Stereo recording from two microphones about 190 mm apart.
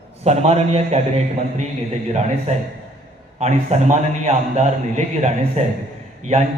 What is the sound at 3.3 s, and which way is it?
A man's voice, 35° right (ahead or behind).